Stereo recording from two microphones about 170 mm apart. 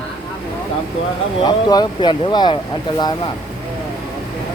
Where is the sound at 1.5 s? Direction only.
25° left (ahead or behind).